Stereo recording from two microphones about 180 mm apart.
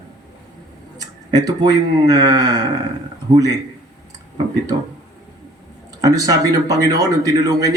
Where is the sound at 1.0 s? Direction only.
20° right (ahead or behind).